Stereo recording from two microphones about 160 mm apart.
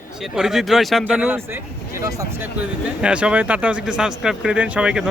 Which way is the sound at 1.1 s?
10° right (ahead or behind).